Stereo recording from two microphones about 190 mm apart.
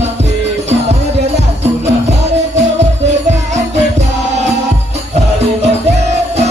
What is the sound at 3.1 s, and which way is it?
Music, 35° right (ahead or behind).